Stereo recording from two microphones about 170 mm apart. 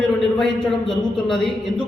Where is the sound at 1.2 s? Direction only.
Centre (ahead or behind).